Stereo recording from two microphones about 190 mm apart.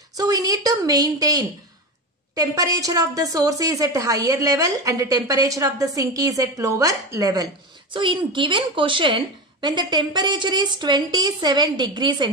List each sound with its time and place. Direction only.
0.2 s a woman's voice: 20° right (ahead or behind)